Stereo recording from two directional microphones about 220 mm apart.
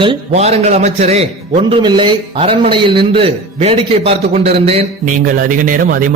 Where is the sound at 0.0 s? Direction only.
25° right (ahead or behind).